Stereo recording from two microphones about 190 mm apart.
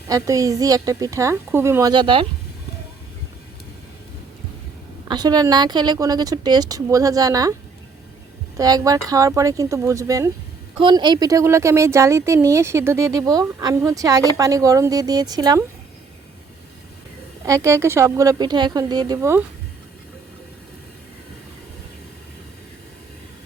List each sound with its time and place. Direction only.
0.1 s speech: 15° right (ahead or behind)
5.0 s a woman's voice: 20° right (ahead or behind)
8.5 s speech: 20° right (ahead or behind)
17.4 s speech: 15° right (ahead or behind)